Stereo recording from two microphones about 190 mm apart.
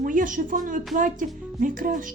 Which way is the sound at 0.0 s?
45° right (ahead or behind).